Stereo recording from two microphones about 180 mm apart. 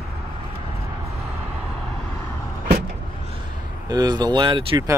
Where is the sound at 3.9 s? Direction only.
20° right (ahead or behind).